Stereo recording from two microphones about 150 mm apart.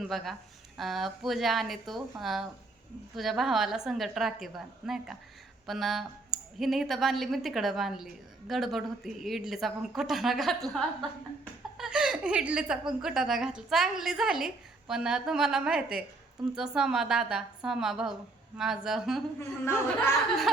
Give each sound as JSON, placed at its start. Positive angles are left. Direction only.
{"t": 0.1, "sound": "speech", "side_deg": 0}
{"t": 19.4, "sound": "speech", "side_deg": 15}